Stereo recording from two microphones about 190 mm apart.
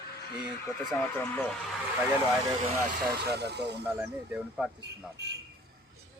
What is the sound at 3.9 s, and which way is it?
Speech, 10° right (ahead or behind).